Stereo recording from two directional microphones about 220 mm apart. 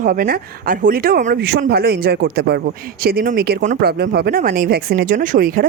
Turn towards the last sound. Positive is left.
turn(degrees=-40)  # may be behind; listen again after turning